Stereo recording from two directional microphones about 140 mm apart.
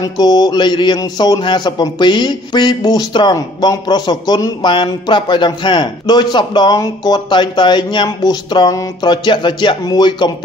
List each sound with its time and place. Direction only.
0.2 s a man's voice: 30° left (ahead or behind)